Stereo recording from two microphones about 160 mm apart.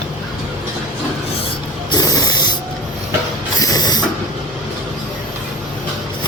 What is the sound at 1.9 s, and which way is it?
Spray, 25° left (ahead or behind).